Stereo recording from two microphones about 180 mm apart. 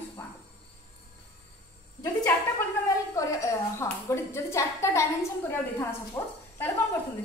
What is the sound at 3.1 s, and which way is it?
A woman's voice, 15° left (ahead or behind).